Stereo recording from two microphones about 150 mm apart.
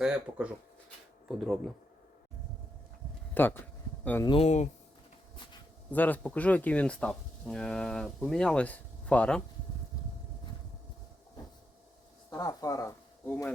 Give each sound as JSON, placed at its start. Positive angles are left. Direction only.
{"t": 0.0, "sound": "speech", "side_deg": -5}
{"t": 3.3, "sound": "a sound", "side_deg": 15}
{"t": 4.3, "sound": "speech", "side_deg": 45}
{"t": 5.9, "sound": "speech", "side_deg": 10}
{"t": 12.3, "sound": "speech", "side_deg": 25}
{"t": 13.2, "sound": "speech", "side_deg": 10}